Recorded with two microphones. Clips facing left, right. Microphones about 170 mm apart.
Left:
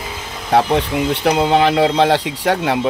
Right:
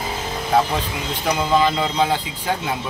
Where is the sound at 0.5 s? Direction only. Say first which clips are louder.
Left 5 dB; 65° left (ahead or behind).